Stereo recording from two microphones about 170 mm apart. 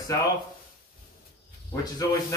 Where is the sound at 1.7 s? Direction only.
20° left (ahead or behind).